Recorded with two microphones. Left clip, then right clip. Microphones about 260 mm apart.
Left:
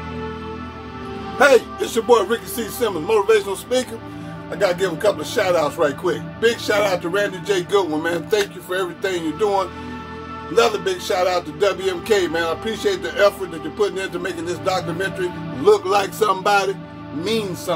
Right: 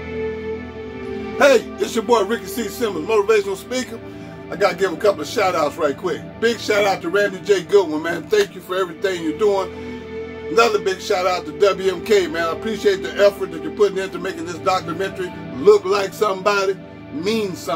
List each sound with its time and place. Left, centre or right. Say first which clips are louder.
1.4 s speech: even; centre
10.5 s music: right 1 dB; centre
13.7 s speech: right 3 dB; centre